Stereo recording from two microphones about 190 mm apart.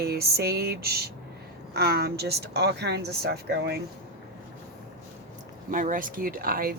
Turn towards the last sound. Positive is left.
turn(degrees=-50)  # may be behind; listen again after turning